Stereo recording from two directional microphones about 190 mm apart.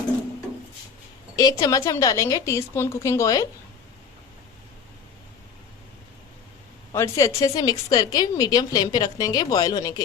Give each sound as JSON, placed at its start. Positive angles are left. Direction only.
{"t": 1.4, "sound": "a woman's voice", "side_deg": 20}
{"t": 6.9, "sound": "a woman's voice", "side_deg": 15}